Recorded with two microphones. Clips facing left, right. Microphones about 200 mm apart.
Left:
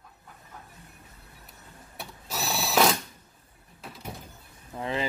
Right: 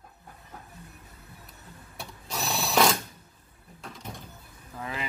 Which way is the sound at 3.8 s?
5° left (ahead or behind).